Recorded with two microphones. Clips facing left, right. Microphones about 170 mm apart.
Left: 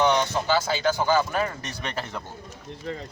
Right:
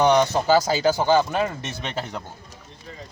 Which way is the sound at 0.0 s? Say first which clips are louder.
Right 4 dB; 40° right (ahead or behind).